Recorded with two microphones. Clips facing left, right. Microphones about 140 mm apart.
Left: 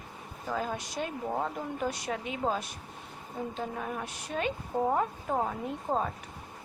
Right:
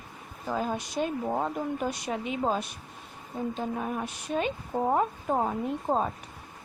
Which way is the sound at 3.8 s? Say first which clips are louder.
Right 4 dB; 20° right (ahead or behind).